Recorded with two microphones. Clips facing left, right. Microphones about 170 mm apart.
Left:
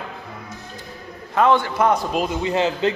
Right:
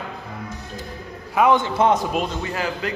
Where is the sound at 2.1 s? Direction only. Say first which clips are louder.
Left 2 dB; 5° left (ahead or behind).